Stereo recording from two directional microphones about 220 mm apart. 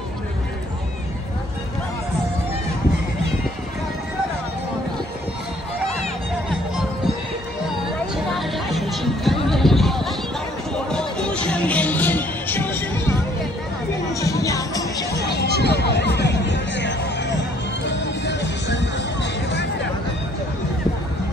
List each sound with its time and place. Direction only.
8.2 s music: centre (ahead or behind)
14.2 s music: 15° left (ahead or behind)
15.0 s music: 50° left (ahead or behind)